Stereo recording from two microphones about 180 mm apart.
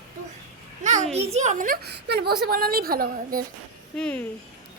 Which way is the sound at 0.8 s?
40° right (ahead or behind).